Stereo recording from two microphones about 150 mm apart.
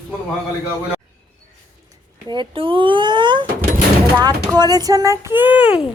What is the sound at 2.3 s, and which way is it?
Speech, 35° right (ahead or behind).